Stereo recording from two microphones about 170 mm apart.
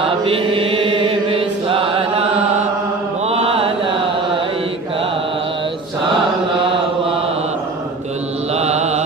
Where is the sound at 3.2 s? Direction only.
35° right (ahead or behind).